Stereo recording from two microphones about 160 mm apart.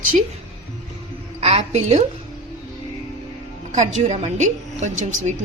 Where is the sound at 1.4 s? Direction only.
40° right (ahead or behind).